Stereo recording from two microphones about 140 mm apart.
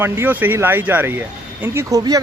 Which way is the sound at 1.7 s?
25° right (ahead or behind).